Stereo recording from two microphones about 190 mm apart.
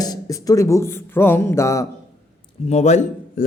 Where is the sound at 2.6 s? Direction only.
35° left (ahead or behind).